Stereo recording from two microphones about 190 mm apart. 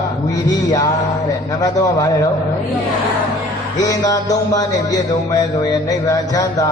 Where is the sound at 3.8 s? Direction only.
20° left (ahead or behind).